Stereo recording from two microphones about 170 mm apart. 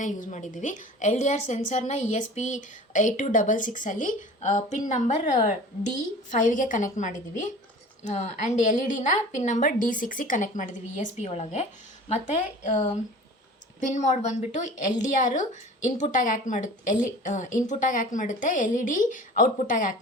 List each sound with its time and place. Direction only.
0.0 s a woman's voice: 45° left (ahead or behind)